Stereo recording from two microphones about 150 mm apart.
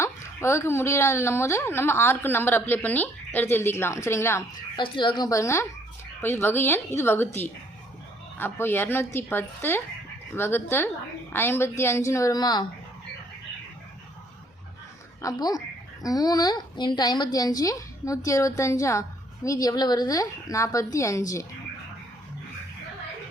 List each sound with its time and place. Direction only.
0.0 s a woman's voice: 20° left (ahead or behind)
4.8 s a woman's voice: 30° left (ahead or behind)
15.2 s a woman's voice: 25° left (ahead or behind)